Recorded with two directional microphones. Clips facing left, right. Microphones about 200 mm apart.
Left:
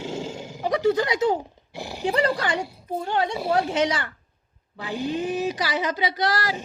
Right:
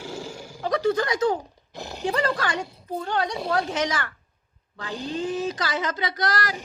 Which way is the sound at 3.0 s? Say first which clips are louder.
Left 2 dB; 20° left (ahead or behind).